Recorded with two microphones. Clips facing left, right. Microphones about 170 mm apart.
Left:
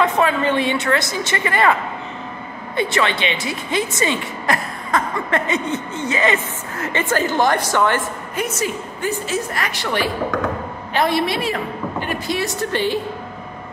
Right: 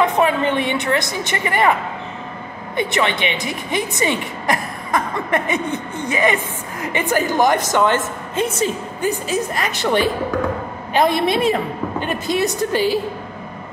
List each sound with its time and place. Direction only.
0.0 s a woman's voice: 20° right (ahead or behind)